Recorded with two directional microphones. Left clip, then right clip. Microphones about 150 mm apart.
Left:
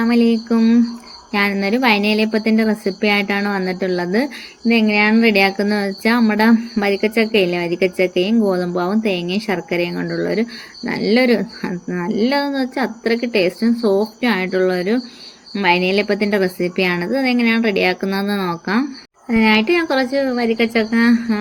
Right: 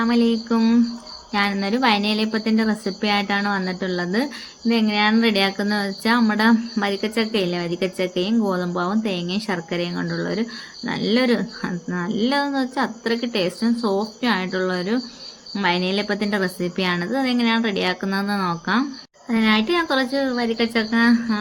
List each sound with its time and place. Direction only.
0.0 s speech: 10° left (ahead or behind)